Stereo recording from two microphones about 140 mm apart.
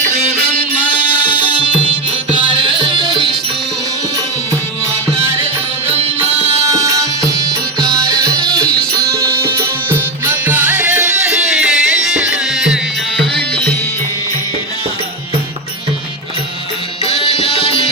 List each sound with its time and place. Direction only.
0.9 s music: 10° right (ahead or behind)
2.4 s music: 35° right (ahead or behind)
6.7 s music: 25° right (ahead or behind)
8.4 s music: 5° left (ahead or behind)
8.9 s music: 25° right (ahead or behind); by 13.7 s 10° left (ahead or behind)
17.1 s music: 45° left (ahead or behind)